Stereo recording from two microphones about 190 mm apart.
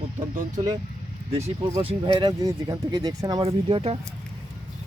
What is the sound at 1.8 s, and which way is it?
Speech, 25° right (ahead or behind).